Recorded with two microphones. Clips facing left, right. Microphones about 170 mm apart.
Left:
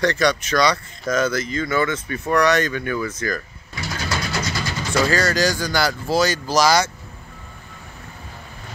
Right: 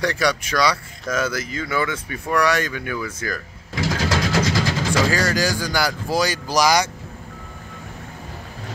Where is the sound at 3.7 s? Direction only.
90° right.